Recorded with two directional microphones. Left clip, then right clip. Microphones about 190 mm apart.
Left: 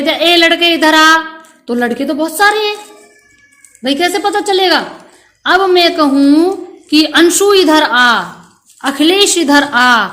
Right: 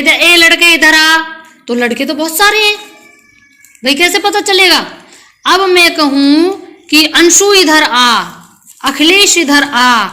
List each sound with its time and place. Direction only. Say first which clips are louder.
0.0 s a woman's voice: right 3 dB; 20° left (ahead or behind)
3.8 s a woman's voice: right 3 dB; 20° left (ahead or behind)